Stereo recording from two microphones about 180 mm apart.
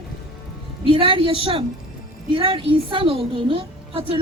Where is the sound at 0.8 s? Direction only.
30° right (ahead or behind).